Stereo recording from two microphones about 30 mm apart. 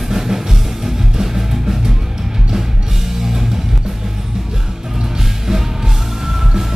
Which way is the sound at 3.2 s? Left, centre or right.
Centre.